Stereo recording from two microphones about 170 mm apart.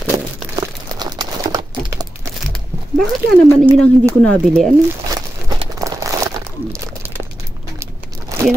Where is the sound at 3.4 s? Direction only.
20° right (ahead or behind).